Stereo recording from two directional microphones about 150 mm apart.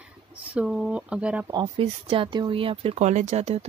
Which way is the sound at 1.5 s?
25° right (ahead or behind).